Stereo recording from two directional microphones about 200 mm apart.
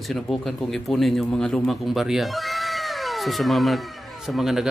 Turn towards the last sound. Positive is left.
turn(degrees=0)  # may be behind; listen again after turning